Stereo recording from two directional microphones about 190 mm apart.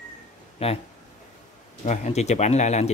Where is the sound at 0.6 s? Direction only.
30° left (ahead or behind).